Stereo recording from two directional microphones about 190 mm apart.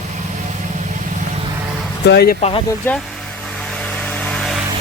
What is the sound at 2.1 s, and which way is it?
Speech, 55° left (ahead or behind).